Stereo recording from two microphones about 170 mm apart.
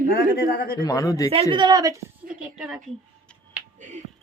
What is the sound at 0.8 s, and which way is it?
Speech, 20° left (ahead or behind).